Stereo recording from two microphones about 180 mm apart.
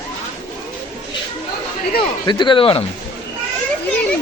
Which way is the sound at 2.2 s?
25° left (ahead or behind).